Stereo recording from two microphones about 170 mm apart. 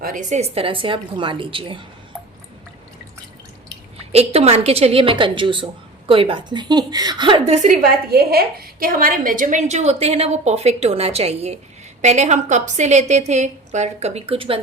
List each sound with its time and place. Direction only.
0.0 s a woman's voice: 50° right (ahead or behind); by 1.8 s 30° right (ahead or behind)
4.1 s a woman's voice: 35° right (ahead or behind)